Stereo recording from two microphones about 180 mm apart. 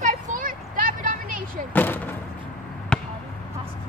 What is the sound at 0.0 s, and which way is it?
Vehicle, 45° right (ahead or behind).